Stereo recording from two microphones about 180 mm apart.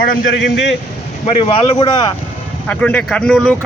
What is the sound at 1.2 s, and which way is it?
Speech, 30° left (ahead or behind).